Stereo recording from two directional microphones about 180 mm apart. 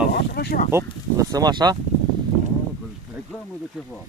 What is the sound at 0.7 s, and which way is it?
Speech, 15° right (ahead or behind).